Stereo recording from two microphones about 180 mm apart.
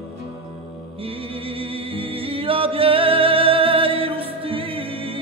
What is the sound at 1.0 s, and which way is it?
Music, 30° right (ahead or behind).